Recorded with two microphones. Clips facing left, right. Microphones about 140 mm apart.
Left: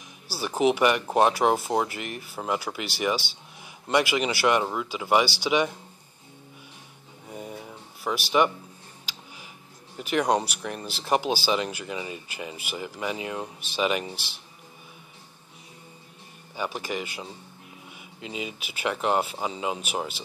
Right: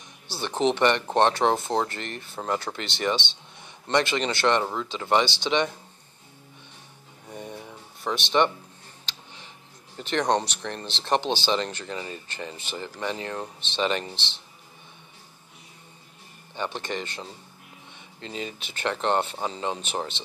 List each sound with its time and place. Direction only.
0.3 s speech: 5° left (ahead or behind)
7.2 s a sound: 5° left (ahead or behind)
9.1 s tick: 10° left (ahead or behind)
9.9 s speech: 10° left (ahead or behind)
16.5 s speech: 5° left (ahead or behind)